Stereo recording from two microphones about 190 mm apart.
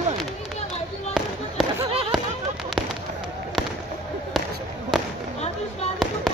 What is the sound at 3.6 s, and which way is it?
Fireworks, centre (ahead or behind).